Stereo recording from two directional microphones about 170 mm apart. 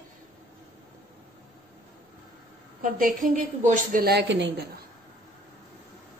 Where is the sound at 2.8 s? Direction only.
50° right (ahead or behind); by 4.8 s 80° right.